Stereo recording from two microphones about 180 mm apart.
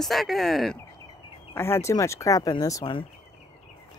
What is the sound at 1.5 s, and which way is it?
Speech, 15° left (ahead or behind).